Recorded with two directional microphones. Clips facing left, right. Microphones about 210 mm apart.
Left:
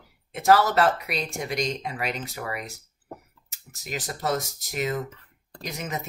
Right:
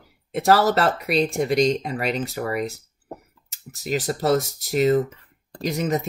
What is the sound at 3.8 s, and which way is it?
Speech, 35° right (ahead or behind).